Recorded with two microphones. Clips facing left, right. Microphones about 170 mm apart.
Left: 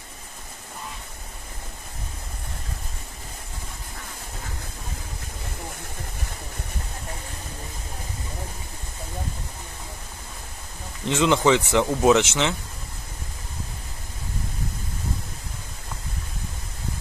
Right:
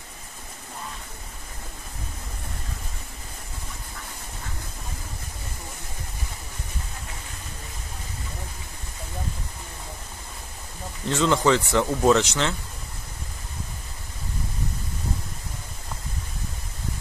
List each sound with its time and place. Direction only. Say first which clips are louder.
11.1 s speech: left 1 dB; 20° left (ahead or behind)